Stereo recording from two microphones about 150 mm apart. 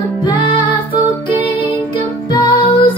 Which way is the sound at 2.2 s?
35° left (ahead or behind).